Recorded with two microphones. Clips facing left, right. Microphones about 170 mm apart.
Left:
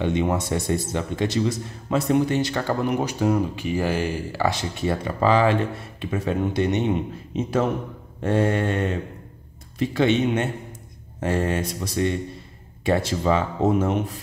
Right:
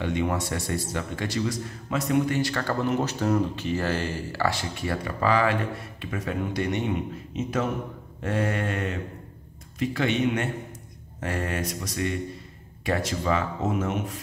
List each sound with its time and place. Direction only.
0.0 s speech: 20° left (ahead or behind)
8.2 s speech: 30° left (ahead or behind)